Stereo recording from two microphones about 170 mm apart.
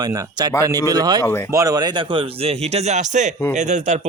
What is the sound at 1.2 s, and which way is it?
Speech, 15° left (ahead or behind).